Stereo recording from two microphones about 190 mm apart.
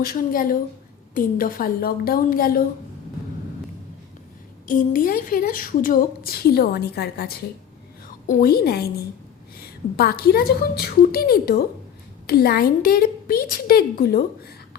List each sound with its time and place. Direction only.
0.0 s a woman's voice: 50° left (ahead or behind)
4.6 s a woman's voice: 45° left (ahead or behind)
10.0 s a woman's voice: 55° left (ahead or behind)